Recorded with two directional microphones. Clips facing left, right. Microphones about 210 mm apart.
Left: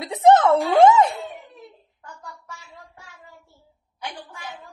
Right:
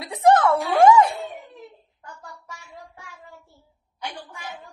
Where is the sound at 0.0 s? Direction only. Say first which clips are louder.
Left 2 dB; 20° left (ahead or behind).